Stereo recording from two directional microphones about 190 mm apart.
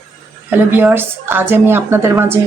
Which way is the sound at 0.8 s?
10° right (ahead or behind).